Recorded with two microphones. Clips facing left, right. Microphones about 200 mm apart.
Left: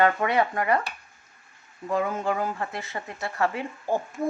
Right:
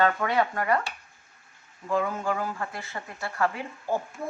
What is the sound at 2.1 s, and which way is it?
A woman's voice, 20° left (ahead or behind).